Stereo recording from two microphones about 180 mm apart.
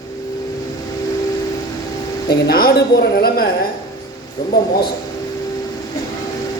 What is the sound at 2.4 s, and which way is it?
A man's voice, 60° left (ahead or behind).